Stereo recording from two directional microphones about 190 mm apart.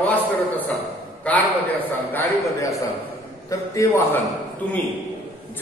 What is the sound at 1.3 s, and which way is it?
A man's voice, 10° left (ahead or behind).